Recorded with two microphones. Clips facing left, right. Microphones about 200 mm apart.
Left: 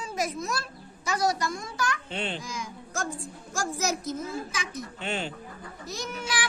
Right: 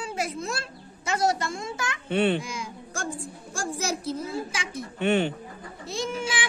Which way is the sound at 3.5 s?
30° right (ahead or behind).